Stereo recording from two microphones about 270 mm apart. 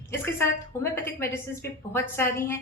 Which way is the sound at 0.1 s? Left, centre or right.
Centre.